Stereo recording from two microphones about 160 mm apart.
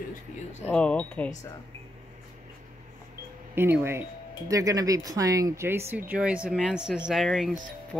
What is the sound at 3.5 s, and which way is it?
Speech, 15° right (ahead or behind).